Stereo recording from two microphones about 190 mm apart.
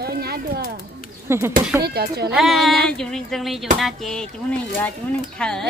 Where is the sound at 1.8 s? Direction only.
60° right (ahead or behind).